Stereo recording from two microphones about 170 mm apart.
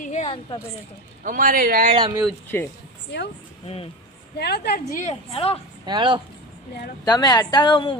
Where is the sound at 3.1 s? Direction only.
90° left.